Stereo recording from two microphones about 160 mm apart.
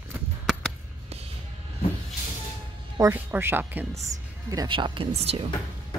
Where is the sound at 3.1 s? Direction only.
15° right (ahead or behind); by 5.4 s 40° right (ahead or behind).